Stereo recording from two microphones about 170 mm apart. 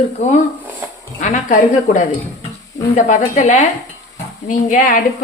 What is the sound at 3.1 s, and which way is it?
Speech, 45° left (ahead or behind).